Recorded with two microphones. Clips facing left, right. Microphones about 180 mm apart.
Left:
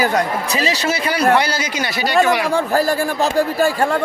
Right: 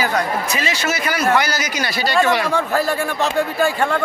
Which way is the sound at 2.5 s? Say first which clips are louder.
Left 2 dB; 35° left (ahead or behind).